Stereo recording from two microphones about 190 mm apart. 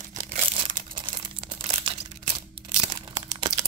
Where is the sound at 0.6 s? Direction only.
25° right (ahead or behind).